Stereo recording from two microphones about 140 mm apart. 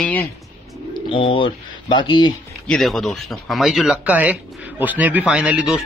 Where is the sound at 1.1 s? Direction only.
40° left (ahead or behind).